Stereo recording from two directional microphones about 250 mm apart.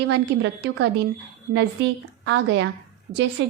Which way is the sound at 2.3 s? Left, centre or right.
Right.